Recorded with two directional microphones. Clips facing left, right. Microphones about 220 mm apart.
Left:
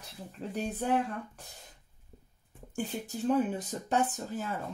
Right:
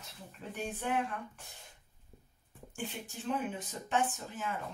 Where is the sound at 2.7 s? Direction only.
40° left (ahead or behind).